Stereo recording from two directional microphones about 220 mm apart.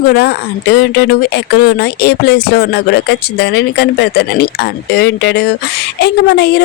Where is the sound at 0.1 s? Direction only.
45° left (ahead or behind).